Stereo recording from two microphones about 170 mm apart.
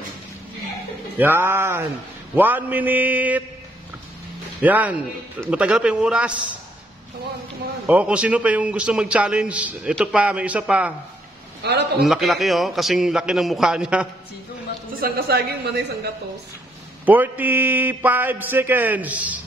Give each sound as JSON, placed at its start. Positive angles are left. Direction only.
{"t": 1.1, "sound": "a man's voice", "side_deg": -10}
{"t": 4.6, "sound": "a man's voice", "side_deg": -10}
{"t": 7.8, "sound": "a man's voice", "side_deg": -10}
{"t": 11.6, "sound": "a woman's voice", "side_deg": -80}
{"t": 12.0, "sound": "a man's voice", "side_deg": 0}
{"t": 15.0, "sound": "a woman's voice", "side_deg": -65}
{"t": 17.0, "sound": "a man's voice", "side_deg": -10}